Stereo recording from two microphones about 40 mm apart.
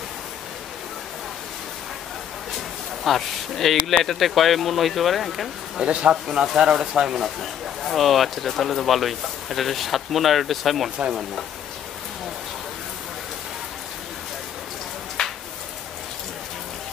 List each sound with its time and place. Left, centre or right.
3.0 s speech: centre
5.9 s speech: right
6.4 s speech: centre
7.8 s speech: centre
15.2 s a sound: centre